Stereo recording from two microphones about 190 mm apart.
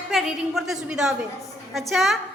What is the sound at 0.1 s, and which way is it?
A woman's voice, centre (ahead or behind).